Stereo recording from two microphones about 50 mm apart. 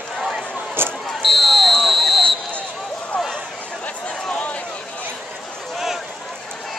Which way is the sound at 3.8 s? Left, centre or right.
Left.